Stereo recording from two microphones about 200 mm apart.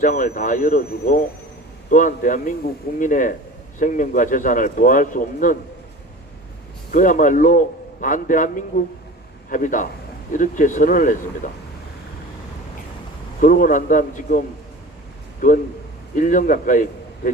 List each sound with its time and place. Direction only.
0.0 s speech: 40° left (ahead or behind)
6.9 s speech: 40° left (ahead or behind)
13.4 s a man's voice: 45° left (ahead or behind)
16.1 s speech: 40° left (ahead or behind)